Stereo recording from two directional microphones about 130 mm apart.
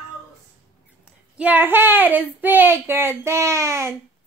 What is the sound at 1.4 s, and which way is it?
Speech, 15° right (ahead or behind).